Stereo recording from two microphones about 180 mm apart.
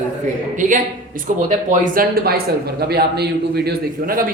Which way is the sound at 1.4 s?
45° right (ahead or behind).